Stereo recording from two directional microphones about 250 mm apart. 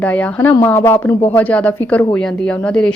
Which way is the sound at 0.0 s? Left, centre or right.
Centre.